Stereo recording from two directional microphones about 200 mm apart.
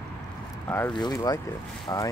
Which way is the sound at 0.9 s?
20° left (ahead or behind).